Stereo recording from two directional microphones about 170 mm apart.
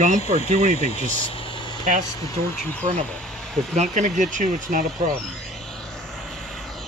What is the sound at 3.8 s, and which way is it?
Speech, 45° right (ahead or behind).